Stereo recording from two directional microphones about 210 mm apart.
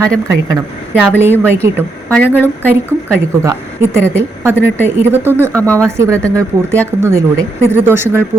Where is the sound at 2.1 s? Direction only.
10° left (ahead or behind).